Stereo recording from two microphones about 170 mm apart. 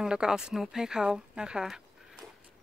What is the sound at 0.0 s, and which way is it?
Speech, 5° right (ahead or behind).